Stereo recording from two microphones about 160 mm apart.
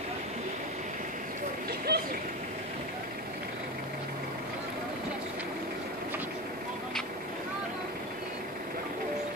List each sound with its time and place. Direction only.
1.9 s vehicle: 80° right